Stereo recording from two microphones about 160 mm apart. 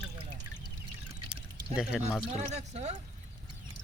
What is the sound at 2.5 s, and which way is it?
Speech, 45° right (ahead or behind).